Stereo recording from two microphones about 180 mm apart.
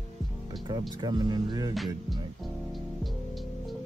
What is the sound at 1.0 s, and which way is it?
Speech, 20° right (ahead or behind).